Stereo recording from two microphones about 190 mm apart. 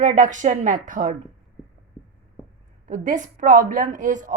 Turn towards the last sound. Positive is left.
turn(degrees=-45)  # may be behind; listen again after turning